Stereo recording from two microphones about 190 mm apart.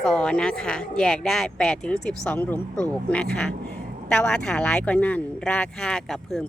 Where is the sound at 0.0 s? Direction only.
5° left (ahead or behind).